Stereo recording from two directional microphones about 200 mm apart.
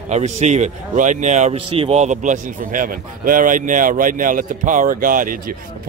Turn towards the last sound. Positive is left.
turn(degrees=-45)  # may be behind; listen again after turning